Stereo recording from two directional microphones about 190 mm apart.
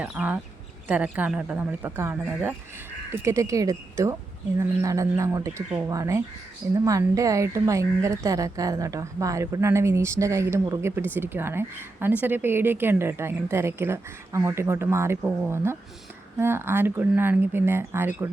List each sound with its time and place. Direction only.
0.0 s a woman's voice: 10° right (ahead or behind)